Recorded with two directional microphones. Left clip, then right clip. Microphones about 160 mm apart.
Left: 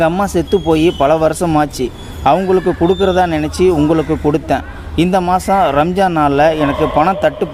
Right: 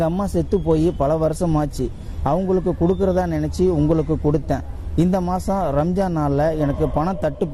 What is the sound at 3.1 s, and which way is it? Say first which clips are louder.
A man's voice: left 8 dB; 35° right (ahead or behind).